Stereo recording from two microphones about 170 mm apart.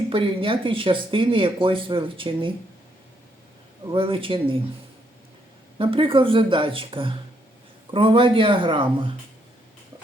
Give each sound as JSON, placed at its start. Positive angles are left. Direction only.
{"t": 0.1, "sound": "speech", "side_deg": -30}
{"t": 3.9, "sound": "speech", "side_deg": -30}
{"t": 5.7, "sound": "speech", "side_deg": -30}